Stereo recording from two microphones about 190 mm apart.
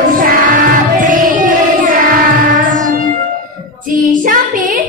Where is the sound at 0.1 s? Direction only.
45° right (ahead or behind).